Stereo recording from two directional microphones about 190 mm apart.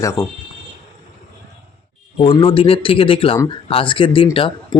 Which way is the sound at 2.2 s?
30° left (ahead or behind).